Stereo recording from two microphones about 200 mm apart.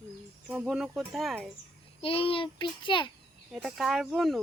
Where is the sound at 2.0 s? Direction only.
25° left (ahead or behind).